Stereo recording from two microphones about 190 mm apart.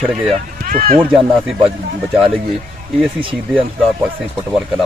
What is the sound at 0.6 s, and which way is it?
Run, 50° right (ahead or behind).